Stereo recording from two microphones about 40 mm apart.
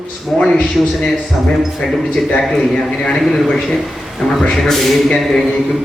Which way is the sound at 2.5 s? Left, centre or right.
Centre.